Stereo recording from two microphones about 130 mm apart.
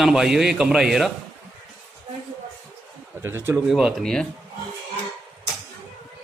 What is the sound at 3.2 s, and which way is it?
Speech, 20° right (ahead or behind).